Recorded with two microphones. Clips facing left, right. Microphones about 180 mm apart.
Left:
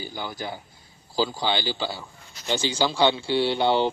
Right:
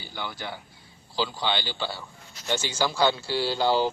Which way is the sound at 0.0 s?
15° left (ahead or behind).